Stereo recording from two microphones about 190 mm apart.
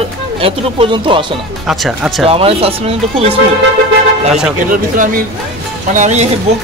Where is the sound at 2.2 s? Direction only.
30° right (ahead or behind).